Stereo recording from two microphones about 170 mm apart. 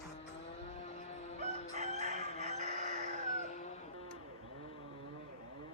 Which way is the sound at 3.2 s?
40° left (ahead or behind).